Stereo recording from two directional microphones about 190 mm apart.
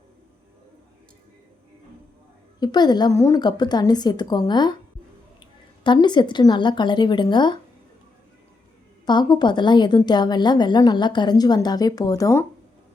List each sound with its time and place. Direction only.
2.6 s a woman's voice: 20° left (ahead or behind)
5.8 s a woman's voice: 25° left (ahead or behind)
9.0 s a woman's voice: 25° left (ahead or behind)